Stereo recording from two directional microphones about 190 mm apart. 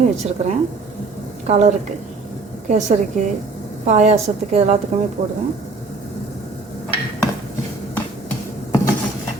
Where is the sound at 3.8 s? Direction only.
35° right (ahead or behind).